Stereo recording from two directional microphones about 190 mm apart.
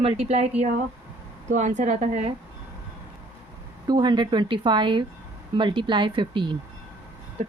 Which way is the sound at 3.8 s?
20° right (ahead or behind).